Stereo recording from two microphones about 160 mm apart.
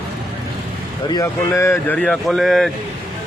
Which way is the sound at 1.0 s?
20° left (ahead or behind).